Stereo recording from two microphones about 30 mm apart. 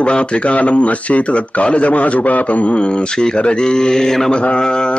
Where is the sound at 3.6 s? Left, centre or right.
Left.